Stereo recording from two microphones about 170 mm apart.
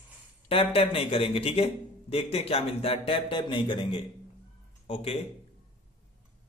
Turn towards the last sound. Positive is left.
turn(degrees=35)  # may be behind; listen again after turning